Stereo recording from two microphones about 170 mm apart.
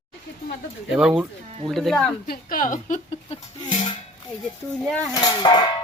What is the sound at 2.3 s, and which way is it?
A woman's voice, 55° left (ahead or behind).